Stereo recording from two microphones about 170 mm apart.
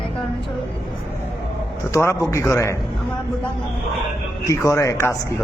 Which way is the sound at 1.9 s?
15° left (ahead or behind).